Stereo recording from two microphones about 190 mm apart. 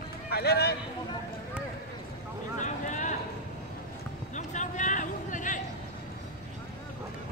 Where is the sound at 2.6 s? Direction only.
40° left (ahead or behind).